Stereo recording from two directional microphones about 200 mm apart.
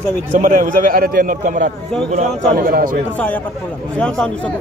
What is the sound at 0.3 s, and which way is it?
A man's voice, 40° right (ahead or behind).